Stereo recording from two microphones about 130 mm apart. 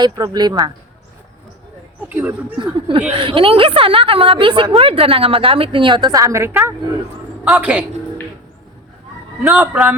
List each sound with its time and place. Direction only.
0.0 s speech: 30° right (ahead or behind)
2.0 s speech: 10° right (ahead or behind)
2.6 s a woman's voice: 40° right (ahead or behind); by 7.9 s 10° right (ahead or behind)
9.4 s a man's voice: 10° right (ahead or behind)